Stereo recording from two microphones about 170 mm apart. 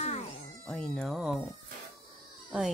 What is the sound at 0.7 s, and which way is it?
Speech, 5° left (ahead or behind).